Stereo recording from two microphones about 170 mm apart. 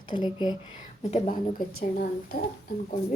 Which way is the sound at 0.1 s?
25° left (ahead or behind).